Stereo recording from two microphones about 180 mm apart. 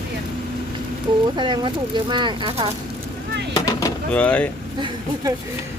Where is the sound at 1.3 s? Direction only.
25° right (ahead or behind).